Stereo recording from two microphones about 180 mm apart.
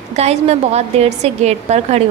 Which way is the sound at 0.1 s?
35° right (ahead or behind).